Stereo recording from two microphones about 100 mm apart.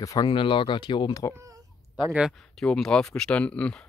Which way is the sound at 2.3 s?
5° left (ahead or behind).